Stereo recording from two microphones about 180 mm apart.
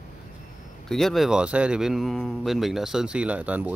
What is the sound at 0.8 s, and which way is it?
Speech, centre (ahead or behind).